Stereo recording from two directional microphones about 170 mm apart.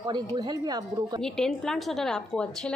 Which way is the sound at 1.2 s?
5° left (ahead or behind).